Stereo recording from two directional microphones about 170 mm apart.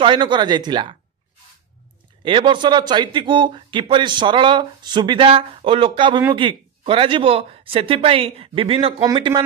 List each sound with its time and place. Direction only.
0.0 s speech: 30° right (ahead or behind)
2.2 s speech: 30° right (ahead or behind)